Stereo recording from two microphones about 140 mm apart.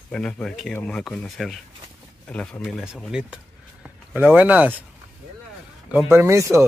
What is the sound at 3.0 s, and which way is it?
Speech, 5° right (ahead or behind).